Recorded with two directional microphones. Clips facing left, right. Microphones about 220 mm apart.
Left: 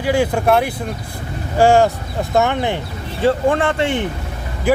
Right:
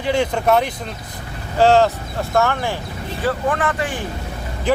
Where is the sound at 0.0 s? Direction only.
5° left (ahead or behind); by 4.0 s 25° left (ahead or behind).